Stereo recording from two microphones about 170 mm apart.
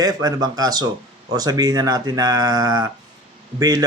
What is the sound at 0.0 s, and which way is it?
Speech, 20° right (ahead or behind).